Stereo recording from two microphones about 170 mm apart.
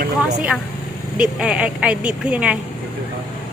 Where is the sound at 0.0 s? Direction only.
45° right (ahead or behind).